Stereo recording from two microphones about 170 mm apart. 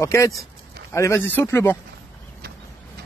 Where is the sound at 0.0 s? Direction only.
15° left (ahead or behind).